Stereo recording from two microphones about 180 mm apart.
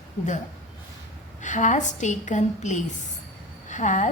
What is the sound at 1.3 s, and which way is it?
A woman's voice, 45° left (ahead or behind).